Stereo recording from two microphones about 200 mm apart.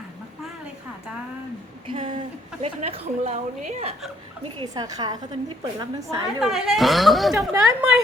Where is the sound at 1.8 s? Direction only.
25° right (ahead or behind).